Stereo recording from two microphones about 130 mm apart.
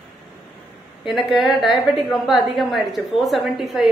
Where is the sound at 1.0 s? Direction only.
Centre (ahead or behind).